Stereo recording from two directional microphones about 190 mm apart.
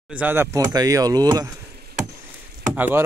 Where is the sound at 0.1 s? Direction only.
10° right (ahead or behind).